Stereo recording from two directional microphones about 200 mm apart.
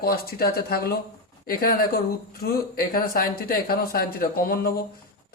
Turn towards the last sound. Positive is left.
turn(degrees=45)  # may be behind; listen again after turning